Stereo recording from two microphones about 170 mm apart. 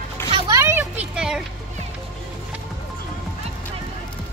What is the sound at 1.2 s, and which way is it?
Speech, 5° right (ahead or behind).